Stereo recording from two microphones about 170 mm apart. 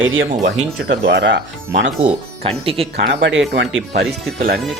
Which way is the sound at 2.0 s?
35° right (ahead or behind).